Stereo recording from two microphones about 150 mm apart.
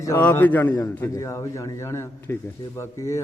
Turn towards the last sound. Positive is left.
turn(degrees=20)  # may be behind; listen again after turning